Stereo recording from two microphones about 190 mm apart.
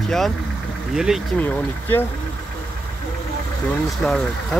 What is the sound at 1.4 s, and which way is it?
Speech, 10° left (ahead or behind).